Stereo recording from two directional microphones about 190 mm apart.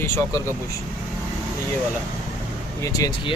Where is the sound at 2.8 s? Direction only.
20° left (ahead or behind).